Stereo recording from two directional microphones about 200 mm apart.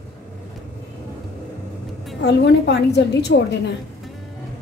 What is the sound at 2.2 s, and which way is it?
A woman's voice, 60° left (ahead or behind).